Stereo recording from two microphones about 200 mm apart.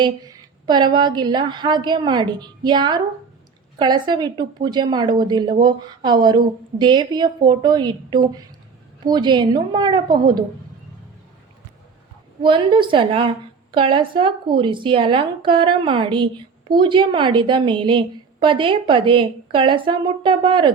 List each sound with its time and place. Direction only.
0.0 s a sound: 20° right (ahead or behind)
0.9 s a woman's voice: 20° right (ahead or behind)
12.4 s a woman's voice: 25° right (ahead or behind)